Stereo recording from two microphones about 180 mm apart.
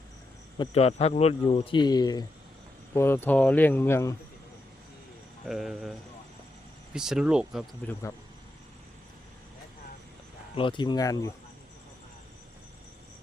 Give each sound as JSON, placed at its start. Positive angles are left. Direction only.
{"t": 0.6, "sound": "speech", "side_deg": 35}
{"t": 5.5, "sound": "speech", "side_deg": 0}
{"t": 7.8, "sound": "speech", "side_deg": 5}
{"t": 10.5, "sound": "speech", "side_deg": 30}